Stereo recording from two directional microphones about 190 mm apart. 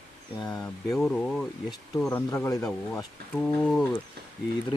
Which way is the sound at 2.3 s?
15° left (ahead or behind).